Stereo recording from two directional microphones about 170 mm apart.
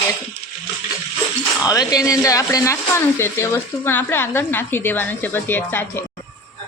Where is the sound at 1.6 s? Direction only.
20° left (ahead or behind).